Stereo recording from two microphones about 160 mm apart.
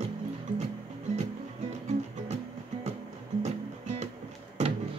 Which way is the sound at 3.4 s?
45° right (ahead or behind).